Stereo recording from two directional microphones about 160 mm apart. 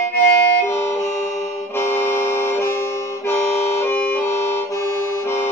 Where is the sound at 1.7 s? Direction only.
15° left (ahead or behind).